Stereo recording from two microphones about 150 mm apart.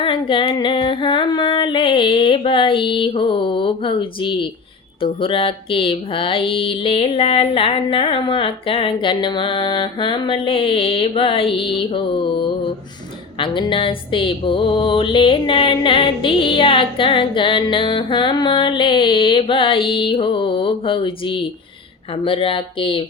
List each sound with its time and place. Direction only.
0.0 s music: 35° left (ahead or behind)